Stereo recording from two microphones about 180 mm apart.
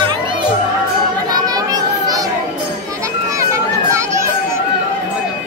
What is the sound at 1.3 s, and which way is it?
Children playing, 20° right (ahead or behind).